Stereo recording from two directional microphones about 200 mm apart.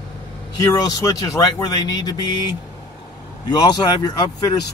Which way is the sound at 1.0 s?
20° left (ahead or behind).